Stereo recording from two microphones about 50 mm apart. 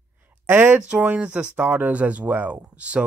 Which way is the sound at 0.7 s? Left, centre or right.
Right.